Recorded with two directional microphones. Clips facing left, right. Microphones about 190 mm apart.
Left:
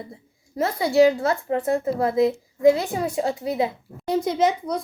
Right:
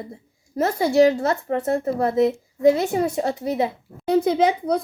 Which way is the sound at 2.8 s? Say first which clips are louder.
Right 3 dB; 25° right (ahead or behind).